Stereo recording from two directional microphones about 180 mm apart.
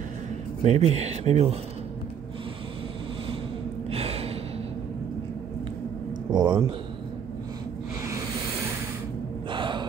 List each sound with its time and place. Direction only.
0.7 s speech: 35° right (ahead or behind)
3.9 s gasp: 35° right (ahead or behind)
6.3 s speech: 25° right (ahead or behind)
8.1 s a sound: 15° right (ahead or behind)
9.5 s gasp: 25° right (ahead or behind)